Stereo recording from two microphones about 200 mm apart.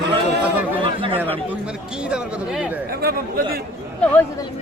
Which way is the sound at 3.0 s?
50° right (ahead or behind).